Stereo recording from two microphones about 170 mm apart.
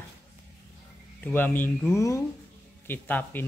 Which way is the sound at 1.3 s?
10° left (ahead or behind).